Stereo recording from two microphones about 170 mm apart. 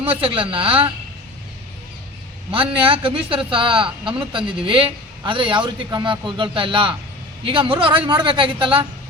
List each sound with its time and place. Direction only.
0.0 s a man's voice: 30° right (ahead or behind)
2.5 s a man's voice: 30° right (ahead or behind)